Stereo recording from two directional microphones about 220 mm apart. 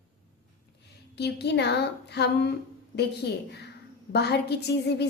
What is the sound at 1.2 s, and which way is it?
A woman's voice, 50° left (ahead or behind).